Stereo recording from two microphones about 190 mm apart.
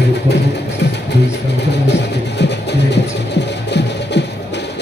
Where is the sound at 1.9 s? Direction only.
65° left (ahead or behind).